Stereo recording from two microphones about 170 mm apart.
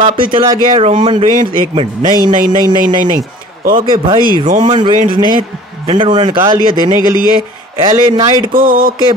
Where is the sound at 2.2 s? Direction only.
50° right (ahead or behind).